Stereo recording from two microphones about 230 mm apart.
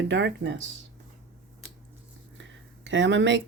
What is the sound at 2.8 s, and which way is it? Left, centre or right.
Speech, right.